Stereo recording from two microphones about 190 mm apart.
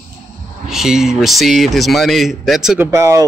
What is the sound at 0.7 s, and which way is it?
Speech, centre (ahead or behind).